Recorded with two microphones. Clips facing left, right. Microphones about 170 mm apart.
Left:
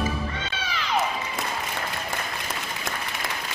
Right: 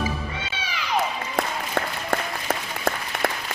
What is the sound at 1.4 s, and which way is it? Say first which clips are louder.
Applause: right 5 dB; 60° right (ahead or behind).